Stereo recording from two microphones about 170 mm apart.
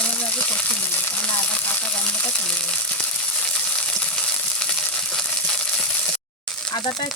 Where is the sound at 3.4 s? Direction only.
5° left (ahead or behind).